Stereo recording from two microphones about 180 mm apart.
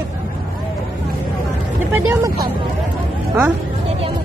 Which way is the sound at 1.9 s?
15° right (ahead or behind).